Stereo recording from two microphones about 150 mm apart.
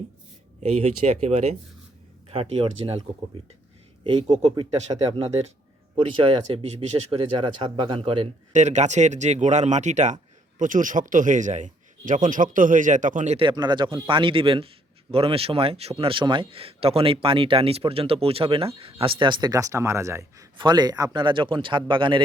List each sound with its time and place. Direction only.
0.6 s speech: 45° right (ahead or behind)
4.0 s speech: 35° right (ahead or behind)
8.5 s a man's voice: 50° right (ahead or behind)
13.3 s speech: 30° right (ahead or behind)